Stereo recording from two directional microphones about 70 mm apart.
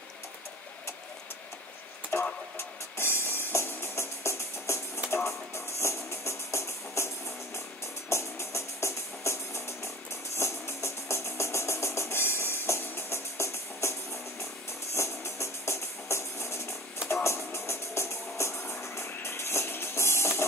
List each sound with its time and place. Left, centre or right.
2.1 s a sound: left
2.5 s music: left
15.0 s music: left